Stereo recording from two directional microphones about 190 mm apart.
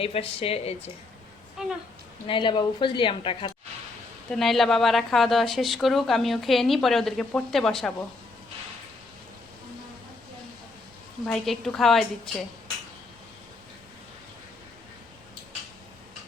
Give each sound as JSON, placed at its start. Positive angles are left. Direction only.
{"t": 0.0, "sound": "speech", "side_deg": 30}
{"t": 2.2, "sound": "a woman's voice", "side_deg": 25}
{"t": 4.3, "sound": "a woman's voice", "side_deg": 0}
{"t": 11.3, "sound": "a woman's voice", "side_deg": 0}